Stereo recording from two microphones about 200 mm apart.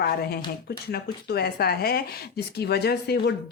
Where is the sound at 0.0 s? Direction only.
50° left (ahead or behind).